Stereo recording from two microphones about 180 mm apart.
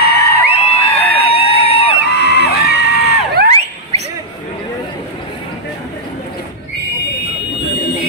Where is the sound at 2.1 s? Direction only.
70° left (ahead or behind).